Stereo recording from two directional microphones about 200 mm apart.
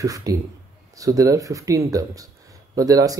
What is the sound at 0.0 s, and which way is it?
Speech, 15° right (ahead or behind).